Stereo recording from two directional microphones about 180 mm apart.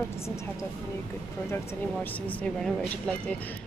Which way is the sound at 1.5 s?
10° left (ahead or behind).